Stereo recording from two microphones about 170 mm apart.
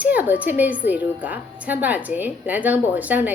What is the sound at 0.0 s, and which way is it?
A woman's voice, 10° right (ahead or behind).